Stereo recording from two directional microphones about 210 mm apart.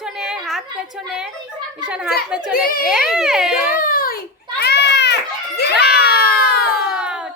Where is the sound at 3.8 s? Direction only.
45° left (ahead or behind).